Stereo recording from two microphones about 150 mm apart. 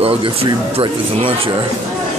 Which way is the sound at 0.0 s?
40° right (ahead or behind).